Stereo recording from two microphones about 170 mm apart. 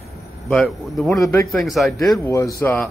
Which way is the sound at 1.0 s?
15° left (ahead or behind).